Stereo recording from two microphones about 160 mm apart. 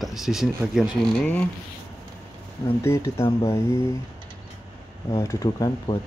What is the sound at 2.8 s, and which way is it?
Speech, 15° left (ahead or behind).